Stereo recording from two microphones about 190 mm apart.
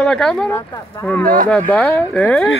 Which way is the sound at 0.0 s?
5° left (ahead or behind).